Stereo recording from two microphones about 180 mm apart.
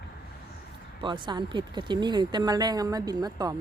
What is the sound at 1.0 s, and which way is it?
Speech, 25° right (ahead or behind).